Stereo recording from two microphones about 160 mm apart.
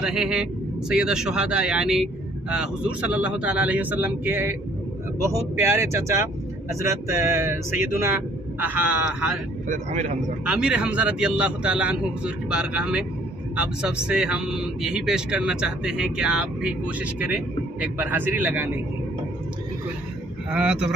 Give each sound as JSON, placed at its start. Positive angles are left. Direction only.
{"t": 0.0, "sound": "speech", "side_deg": -5}
{"t": 9.7, "sound": "speech", "side_deg": -45}
{"t": 10.4, "sound": "speech", "side_deg": -10}
{"t": 20.5, "sound": "speech", "side_deg": -5}